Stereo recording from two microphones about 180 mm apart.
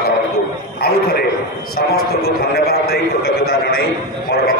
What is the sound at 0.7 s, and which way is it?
A man's voice, 60° left (ahead or behind).